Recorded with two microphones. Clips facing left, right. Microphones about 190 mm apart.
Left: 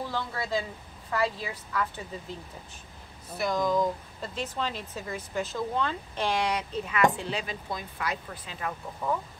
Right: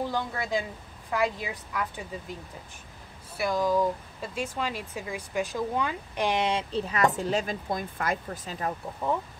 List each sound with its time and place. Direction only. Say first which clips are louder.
0.1 s speech: right 1 dB; 15° right (ahead or behind)
3.3 s speech: right 1 dB; 10° right (ahead or behind); by 8.7 s 40° right (ahead or behind)
9.0 s speech: right 1 dB; 25° right (ahead or behind)